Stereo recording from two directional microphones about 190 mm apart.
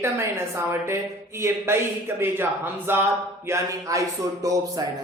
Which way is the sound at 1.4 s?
15° right (ahead or behind).